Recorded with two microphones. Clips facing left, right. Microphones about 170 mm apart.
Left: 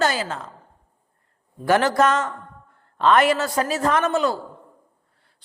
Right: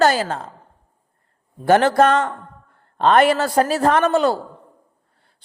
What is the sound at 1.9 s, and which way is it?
A woman's voice, 60° right (ahead or behind).